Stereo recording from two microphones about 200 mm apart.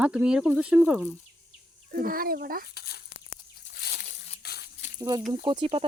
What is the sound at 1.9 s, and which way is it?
Speech, 45° right (ahead or behind).